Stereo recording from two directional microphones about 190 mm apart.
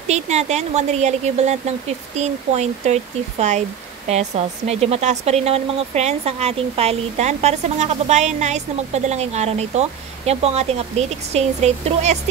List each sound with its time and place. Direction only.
0.1 s speech: 35° right (ahead or behind)